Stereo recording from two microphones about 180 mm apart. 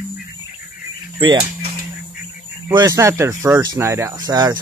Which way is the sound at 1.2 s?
30° right (ahead or behind).